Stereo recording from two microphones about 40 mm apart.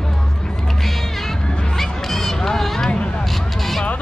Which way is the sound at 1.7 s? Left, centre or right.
Centre.